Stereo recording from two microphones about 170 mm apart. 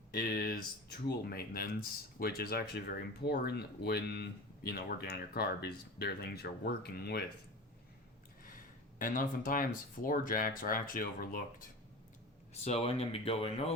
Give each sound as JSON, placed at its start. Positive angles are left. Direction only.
{"t": 0.2, "sound": "a sound", "side_deg": 60}
{"t": 1.0, "sound": "speech", "side_deg": 65}
{"t": 9.0, "sound": "speech", "side_deg": 55}
{"t": 12.6, "sound": "speech", "side_deg": 35}